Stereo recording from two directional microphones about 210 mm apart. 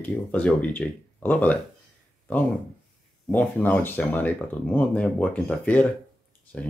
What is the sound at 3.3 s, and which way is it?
Speech, 5° left (ahead or behind).